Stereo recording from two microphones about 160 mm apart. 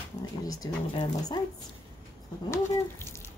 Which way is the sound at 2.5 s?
15° left (ahead or behind).